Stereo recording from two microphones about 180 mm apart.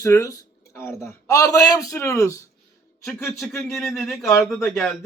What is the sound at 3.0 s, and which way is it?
A man's voice, 5° left (ahead or behind).